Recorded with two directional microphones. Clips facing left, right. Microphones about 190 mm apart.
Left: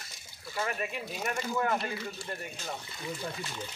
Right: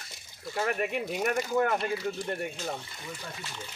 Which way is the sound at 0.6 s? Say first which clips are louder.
Right 5 dB; 60° right (ahead or behind).